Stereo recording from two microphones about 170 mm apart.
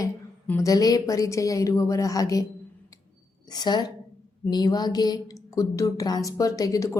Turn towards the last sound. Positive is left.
turn(degrees=20)  # may be behind; listen again after turning